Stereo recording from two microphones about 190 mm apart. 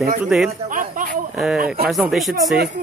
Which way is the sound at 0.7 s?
45° right (ahead or behind).